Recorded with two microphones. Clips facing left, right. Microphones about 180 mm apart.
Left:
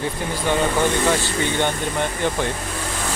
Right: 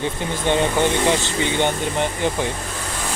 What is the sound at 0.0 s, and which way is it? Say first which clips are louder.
Speech: right 1 dB; 20° right (ahead or behind).